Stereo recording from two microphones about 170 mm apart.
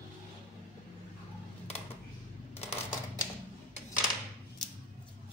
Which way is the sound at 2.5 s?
35° left (ahead or behind).